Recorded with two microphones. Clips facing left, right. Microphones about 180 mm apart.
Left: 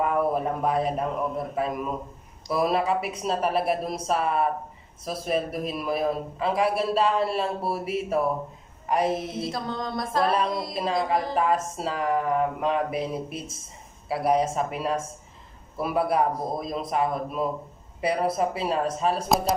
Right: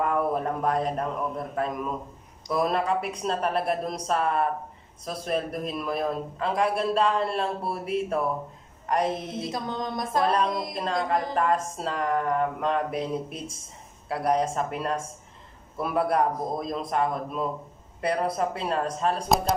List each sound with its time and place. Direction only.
0.0 s a man's voice: 5° left (ahead or behind)
9.4 s a sound: 15° right (ahead or behind)
10.2 s a man's voice: 5° left (ahead or behind)